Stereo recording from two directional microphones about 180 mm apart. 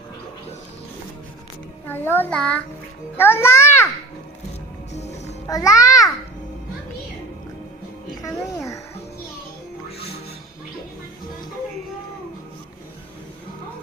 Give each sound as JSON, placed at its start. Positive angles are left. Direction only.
{"t": 1.9, "sound": "a child's voice", "side_deg": 10}
{"t": 4.9, "sound": "music", "side_deg": 40}
{"t": 5.5, "sound": "a child's voice", "side_deg": 20}
{"t": 8.2, "sound": "a child's voice", "side_deg": 15}